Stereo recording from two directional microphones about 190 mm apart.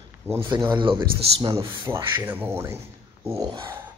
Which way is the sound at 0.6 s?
25° right (ahead or behind).